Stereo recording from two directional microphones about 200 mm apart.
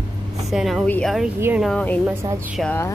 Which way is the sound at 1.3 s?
10° right (ahead or behind).